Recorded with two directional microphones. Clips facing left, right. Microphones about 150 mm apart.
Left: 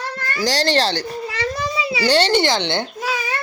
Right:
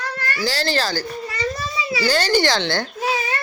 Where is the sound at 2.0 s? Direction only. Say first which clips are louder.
Left 2 dB; 30° left (ahead or behind).